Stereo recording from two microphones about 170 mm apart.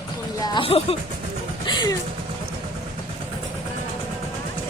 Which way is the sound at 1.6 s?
25° left (ahead or behind).